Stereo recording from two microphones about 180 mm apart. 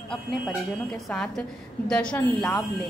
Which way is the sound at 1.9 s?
5° left (ahead or behind).